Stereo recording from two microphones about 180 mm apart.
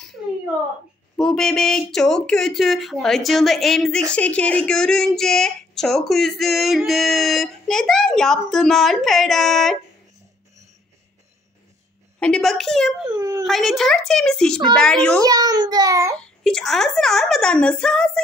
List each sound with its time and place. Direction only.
1.1 s speech: 5° left (ahead or behind)
12.2 s speech: 5° left (ahead or behind)
13.0 s a child's voice: 20° right (ahead or behind)
13.5 s speech: centre (ahead or behind)
15.2 s a child's voice: 20° right (ahead or behind)
16.2 s speech: 5° left (ahead or behind)